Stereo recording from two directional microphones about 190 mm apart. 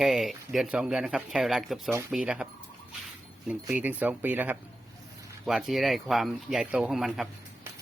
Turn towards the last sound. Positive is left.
turn(degrees=0)  # may be behind; listen again after turning